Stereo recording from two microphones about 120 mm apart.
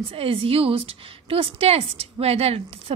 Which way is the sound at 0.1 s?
50° right (ahead or behind).